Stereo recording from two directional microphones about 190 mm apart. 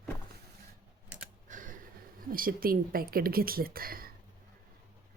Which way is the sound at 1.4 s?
45° right (ahead or behind).